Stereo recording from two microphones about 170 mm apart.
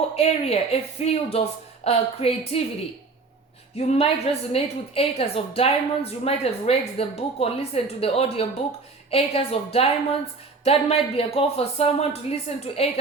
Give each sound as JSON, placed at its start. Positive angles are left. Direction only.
{"t": 0.2, "sound": "a woman's voice", "side_deg": 35}
{"t": 3.8, "sound": "a woman's voice", "side_deg": 35}